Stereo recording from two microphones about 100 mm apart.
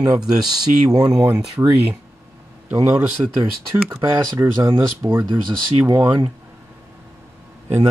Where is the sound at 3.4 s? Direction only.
30° right (ahead or behind).